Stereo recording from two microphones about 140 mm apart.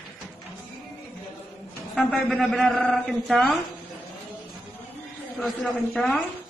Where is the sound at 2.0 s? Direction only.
10° left (ahead or behind).